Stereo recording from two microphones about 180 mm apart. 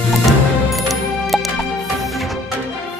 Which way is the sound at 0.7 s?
Centre (ahead or behind).